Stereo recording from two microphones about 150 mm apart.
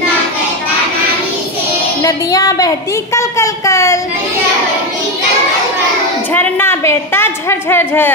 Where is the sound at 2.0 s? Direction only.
25° left (ahead or behind).